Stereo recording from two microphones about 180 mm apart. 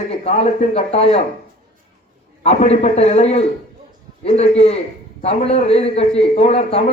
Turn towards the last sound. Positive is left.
turn(degrees=35)  # may be behind; listen again after turning